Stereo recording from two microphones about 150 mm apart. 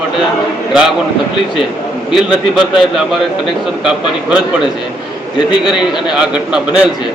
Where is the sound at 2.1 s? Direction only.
5° right (ahead or behind).